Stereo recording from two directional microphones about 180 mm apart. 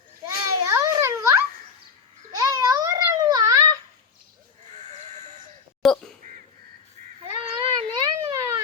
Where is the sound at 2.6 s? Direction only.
20° right (ahead or behind).